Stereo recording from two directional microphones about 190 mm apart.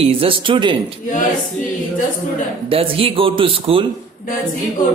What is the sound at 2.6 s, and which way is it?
Speech, 30° right (ahead or behind).